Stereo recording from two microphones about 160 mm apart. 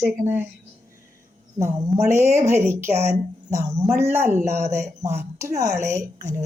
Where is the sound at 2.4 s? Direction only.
15° right (ahead or behind).